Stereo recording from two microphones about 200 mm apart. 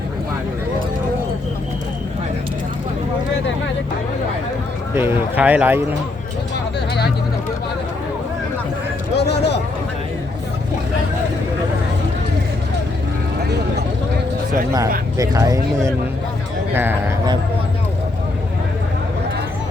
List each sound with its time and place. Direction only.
4.9 s speech: 10° right (ahead or behind)
9.1 s vehicle: 55° left (ahead or behind)
15.2 s speech: 15° right (ahead or behind)